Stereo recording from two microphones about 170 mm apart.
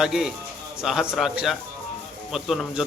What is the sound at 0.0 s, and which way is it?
Speech, 5° right (ahead or behind).